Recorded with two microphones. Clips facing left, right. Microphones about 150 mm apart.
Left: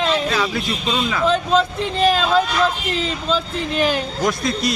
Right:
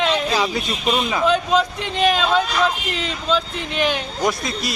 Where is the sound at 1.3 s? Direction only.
Centre (ahead or behind).